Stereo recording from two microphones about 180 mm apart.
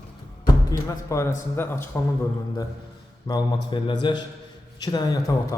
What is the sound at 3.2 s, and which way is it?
A man's voice, 20° left (ahead or behind).